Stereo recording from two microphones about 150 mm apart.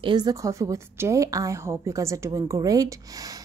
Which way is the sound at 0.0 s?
30° right (ahead or behind).